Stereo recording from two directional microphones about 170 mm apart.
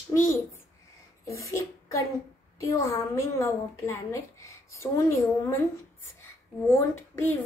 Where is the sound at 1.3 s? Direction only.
15° left (ahead or behind).